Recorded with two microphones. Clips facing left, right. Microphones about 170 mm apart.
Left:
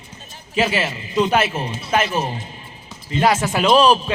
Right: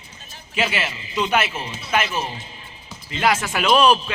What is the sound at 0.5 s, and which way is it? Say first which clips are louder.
A man's voice: left 4 dB; 35° left (ahead or behind).